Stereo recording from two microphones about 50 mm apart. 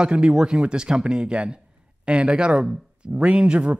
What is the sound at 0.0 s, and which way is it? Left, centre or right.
Speech, centre.